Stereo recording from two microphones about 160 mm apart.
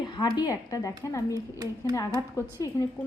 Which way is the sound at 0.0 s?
25° left (ahead or behind).